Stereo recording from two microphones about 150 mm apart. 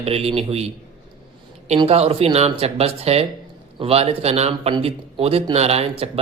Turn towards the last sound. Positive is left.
turn(degrees=-40)  # may be behind; listen again after turning